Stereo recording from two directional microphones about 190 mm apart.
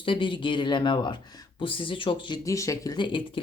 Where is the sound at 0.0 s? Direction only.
25° left (ahead or behind).